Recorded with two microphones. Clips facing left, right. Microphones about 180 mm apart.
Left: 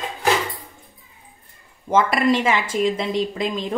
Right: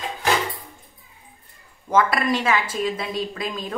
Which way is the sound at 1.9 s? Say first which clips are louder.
Left 2 dB; 25° left (ahead or behind).